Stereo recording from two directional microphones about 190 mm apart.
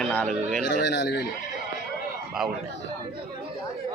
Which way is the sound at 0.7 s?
65° left (ahead or behind).